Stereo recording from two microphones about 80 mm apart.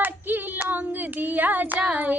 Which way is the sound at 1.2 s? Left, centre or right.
Right.